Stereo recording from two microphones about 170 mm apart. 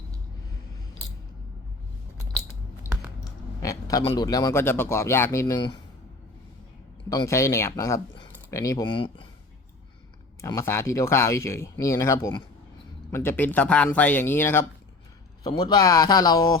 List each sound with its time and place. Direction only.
2.8 s a sound: 20° left (ahead or behind)
4.0 s speech: 25° left (ahead or behind)
7.1 s speech: 20° left (ahead or behind)
10.4 s speech: 20° left (ahead or behind)